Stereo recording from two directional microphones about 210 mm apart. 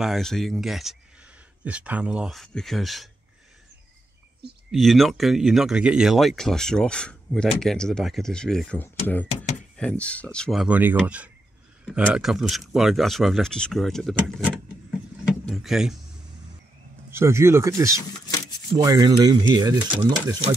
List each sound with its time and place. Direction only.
0.0 s speech: centre (ahead or behind)
4.6 s speech: centre (ahead or behind)
17.1 s speech: 10° right (ahead or behind)